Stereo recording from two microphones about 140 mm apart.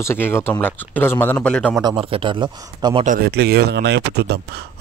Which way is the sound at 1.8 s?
35° right (ahead or behind).